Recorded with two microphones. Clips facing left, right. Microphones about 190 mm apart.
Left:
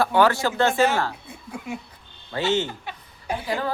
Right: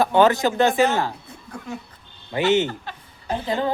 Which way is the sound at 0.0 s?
20° right (ahead or behind).